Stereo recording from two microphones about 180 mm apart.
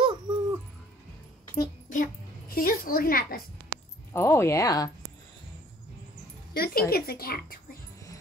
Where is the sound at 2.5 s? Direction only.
55° left (ahead or behind).